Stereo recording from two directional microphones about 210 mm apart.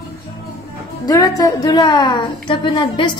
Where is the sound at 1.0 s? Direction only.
15° left (ahead or behind).